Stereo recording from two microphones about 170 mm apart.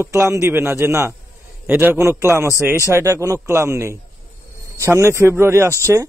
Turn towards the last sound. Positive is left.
turn(degrees=-20)  # may be behind; listen again after turning